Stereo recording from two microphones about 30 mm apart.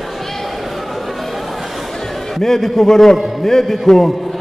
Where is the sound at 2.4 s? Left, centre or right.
Centre.